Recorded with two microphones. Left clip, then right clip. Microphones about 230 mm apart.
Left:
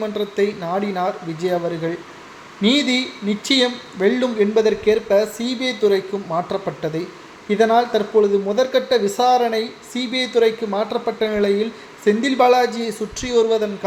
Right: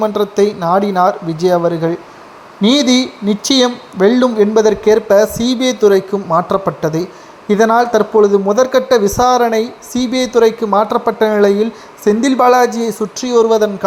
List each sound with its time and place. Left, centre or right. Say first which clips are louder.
0.0 s speech: right 8 dB; right